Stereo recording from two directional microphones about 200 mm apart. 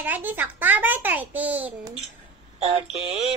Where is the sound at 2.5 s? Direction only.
30° right (ahead or behind).